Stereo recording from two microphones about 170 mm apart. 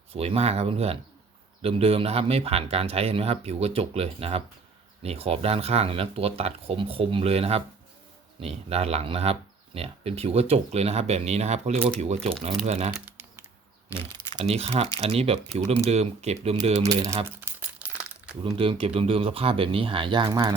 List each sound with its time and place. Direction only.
0.1 s speech: 35° right (ahead or behind)
13.9 s speech: 30° right (ahead or behind)
16.9 s speech: 20° right (ahead or behind)
17.2 s crumpling: 10° right (ahead or behind)
18.4 s speech: 30° right (ahead or behind)